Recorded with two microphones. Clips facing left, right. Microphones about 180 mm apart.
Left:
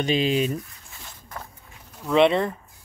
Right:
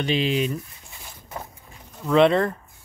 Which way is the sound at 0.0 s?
40° left (ahead or behind).